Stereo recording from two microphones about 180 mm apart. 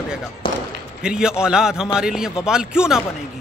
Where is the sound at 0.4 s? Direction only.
30° left (ahead or behind).